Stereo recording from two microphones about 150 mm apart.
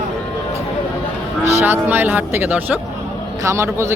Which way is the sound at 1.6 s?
15° right (ahead or behind).